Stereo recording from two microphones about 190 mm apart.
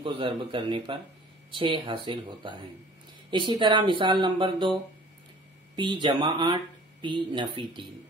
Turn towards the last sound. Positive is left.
turn(degrees=-25)  # may be behind; listen again after turning